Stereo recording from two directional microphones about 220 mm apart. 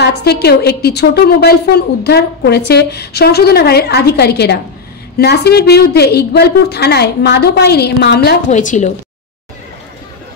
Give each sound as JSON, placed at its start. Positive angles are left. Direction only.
{"t": 0.0, "sound": "a woman's voice", "side_deg": 45}
{"t": 8.5, "sound": "a woman's voice", "side_deg": 35}